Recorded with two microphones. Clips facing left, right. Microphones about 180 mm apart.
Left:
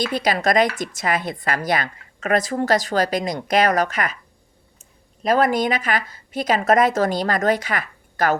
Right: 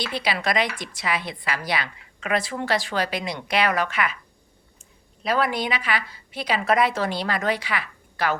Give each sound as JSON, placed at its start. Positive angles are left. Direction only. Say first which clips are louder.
{"t": 0.0, "sound": "a woman's voice", "louder": "left 6 dB", "side_deg": 45}
{"t": 5.2, "sound": "a woman's voice", "louder": "left 6 dB", "side_deg": 45}